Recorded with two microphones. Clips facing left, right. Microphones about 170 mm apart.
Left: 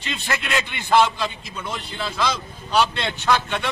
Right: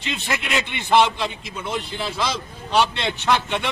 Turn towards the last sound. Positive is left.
turn(degrees=-20)  # may be behind; listen again after turning